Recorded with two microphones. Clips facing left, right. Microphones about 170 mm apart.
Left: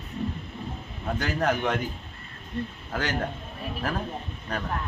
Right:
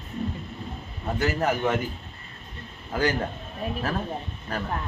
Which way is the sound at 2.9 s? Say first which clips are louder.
Right 5 dB; 10° right (ahead or behind).